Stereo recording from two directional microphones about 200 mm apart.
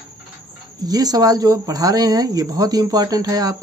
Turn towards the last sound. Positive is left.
turn(degrees=-15)  # may be behind; listen again after turning